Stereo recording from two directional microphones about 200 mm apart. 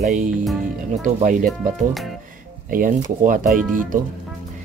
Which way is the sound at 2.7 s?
45° right (ahead or behind).